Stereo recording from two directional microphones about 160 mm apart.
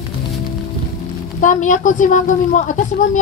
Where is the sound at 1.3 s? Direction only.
50° left (ahead or behind).